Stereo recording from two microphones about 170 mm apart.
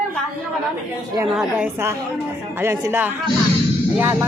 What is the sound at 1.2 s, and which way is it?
Speech, 5° right (ahead or behind).